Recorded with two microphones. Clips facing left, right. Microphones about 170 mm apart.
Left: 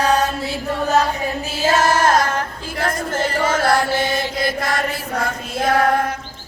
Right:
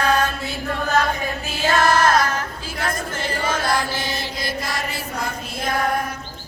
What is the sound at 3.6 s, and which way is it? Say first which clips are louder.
Chant: left 6 dB; 65° left (ahead or behind).